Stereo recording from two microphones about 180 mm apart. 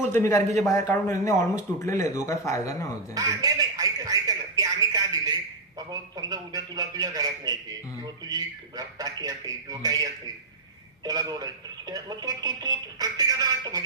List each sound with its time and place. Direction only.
0.1 s speech: 15° left (ahead or behind)
3.2 s a sound: 20° right (ahead or behind)
5.9 s a man's voice: 20° right (ahead or behind)